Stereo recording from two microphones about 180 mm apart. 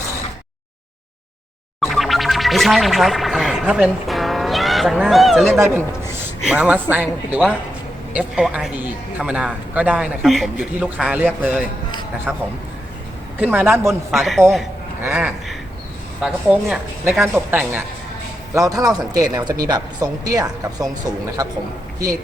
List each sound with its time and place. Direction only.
1.8 s music: centre (ahead or behind)
5.5 s a man's voice: 15° right (ahead or behind)
13.4 s a man's voice: 10° right (ahead or behind)
14.1 s a man's voice: centre (ahead or behind); by 21.5 s 20° right (ahead or behind)